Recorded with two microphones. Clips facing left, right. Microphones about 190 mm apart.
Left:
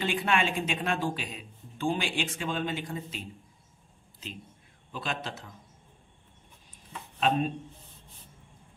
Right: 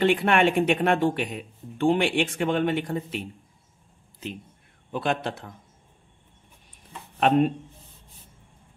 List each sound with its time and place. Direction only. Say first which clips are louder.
0.0 s speech: right 8 dB; 65° right (ahead or behind)
4.9 s speech: right 9 dB; 55° right (ahead or behind)
7.2 s speech: right 7 dB; 65° right (ahead or behind)